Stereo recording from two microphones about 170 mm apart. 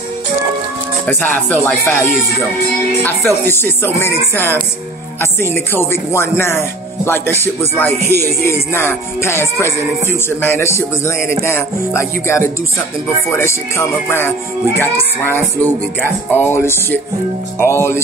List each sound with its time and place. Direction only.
1.0 s speech: 10° left (ahead or behind)
3.3 s music: 15° left (ahead or behind)
5.7 s music: 15° left (ahead or behind)